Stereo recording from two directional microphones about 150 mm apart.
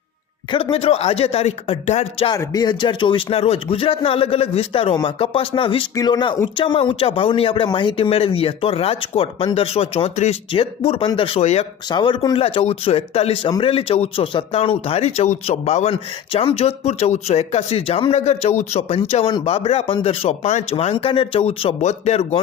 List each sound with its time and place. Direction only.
0.5 s speech: 40° left (ahead or behind)
2.3 s speech: 25° left (ahead or behind); by 11.6 s 45° left (ahead or behind)
11.9 s speech: 30° left (ahead or behind)